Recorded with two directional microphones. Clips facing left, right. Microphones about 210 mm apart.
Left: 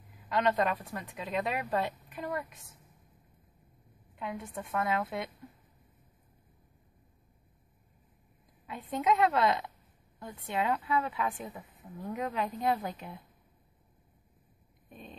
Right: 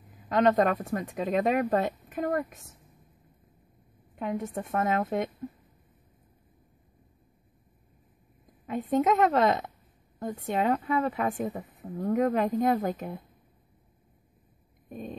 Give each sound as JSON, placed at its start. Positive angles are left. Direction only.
{"t": 0.3, "sound": "a woman's voice", "side_deg": -45}
{"t": 4.1, "sound": "a woman's voice", "side_deg": -45}
{"t": 8.6, "sound": "a woman's voice", "side_deg": -45}
{"t": 14.9, "sound": "a sound", "side_deg": -45}